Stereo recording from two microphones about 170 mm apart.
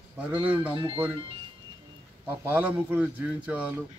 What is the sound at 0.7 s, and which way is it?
Speech, 30° right (ahead or behind).